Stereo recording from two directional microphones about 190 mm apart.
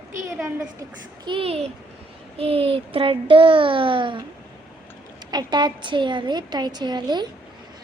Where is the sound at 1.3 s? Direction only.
30° right (ahead or behind).